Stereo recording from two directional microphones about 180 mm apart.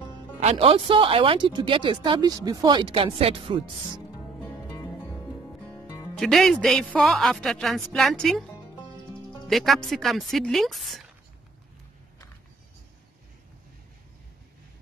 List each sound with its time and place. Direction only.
0.4 s speech: 35° right (ahead or behind)
4.4 s music: 10° left (ahead or behind)
6.1 s speech: centre (ahead or behind)
9.5 s speech: centre (ahead or behind)